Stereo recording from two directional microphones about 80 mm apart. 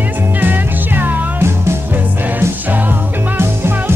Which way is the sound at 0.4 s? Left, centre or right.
Right.